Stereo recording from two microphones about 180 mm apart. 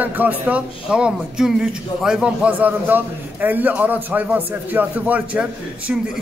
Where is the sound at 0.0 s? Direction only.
10° right (ahead or behind).